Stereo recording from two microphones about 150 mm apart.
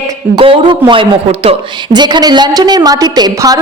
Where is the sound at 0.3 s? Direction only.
35° right (ahead or behind).